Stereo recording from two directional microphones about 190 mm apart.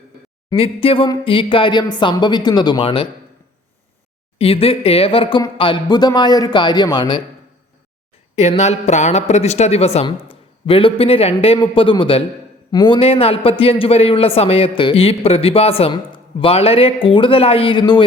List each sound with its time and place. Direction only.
0.5 s a woman's voice: 30° left (ahead or behind)
4.4 s a man's voice: 30° left (ahead or behind)
8.4 s a man's voice: 35° left (ahead or behind)